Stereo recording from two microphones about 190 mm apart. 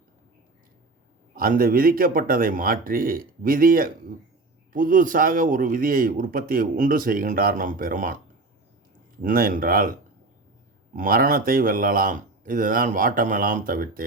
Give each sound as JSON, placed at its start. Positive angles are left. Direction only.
{"t": 1.4, "sound": "speech", "side_deg": -50}
{"t": 9.2, "sound": "speech", "side_deg": -50}
{"t": 10.9, "sound": "speech", "side_deg": -45}